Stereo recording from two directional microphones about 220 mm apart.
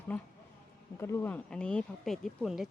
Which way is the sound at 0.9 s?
10° left (ahead or behind).